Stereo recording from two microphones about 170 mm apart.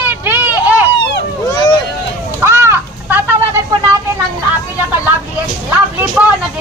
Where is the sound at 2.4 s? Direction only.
15° right (ahead or behind).